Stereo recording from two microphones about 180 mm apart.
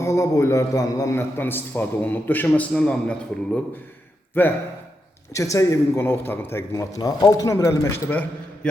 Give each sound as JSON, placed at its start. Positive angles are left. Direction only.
{"t": 0.0, "sound": "a man's voice", "side_deg": 15}